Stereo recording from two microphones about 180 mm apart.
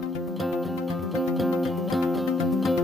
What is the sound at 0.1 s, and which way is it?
Music, centre (ahead or behind).